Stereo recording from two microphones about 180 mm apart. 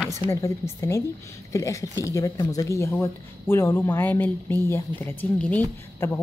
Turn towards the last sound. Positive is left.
turn(degrees=10)  # may be behind; listen again after turning